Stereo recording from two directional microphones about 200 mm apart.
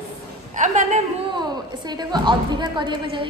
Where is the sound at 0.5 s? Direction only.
40° right (ahead or behind).